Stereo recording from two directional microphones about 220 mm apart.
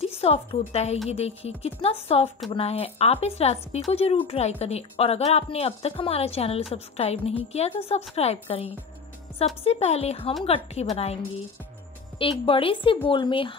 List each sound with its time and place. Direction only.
0.0 s a woman's voice: 25° left (ahead or behind)
9.7 s speech: 30° left (ahead or behind)
12.2 s speech: 25° left (ahead or behind)